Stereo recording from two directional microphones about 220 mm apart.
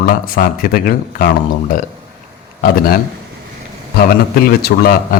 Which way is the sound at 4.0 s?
40° left (ahead or behind).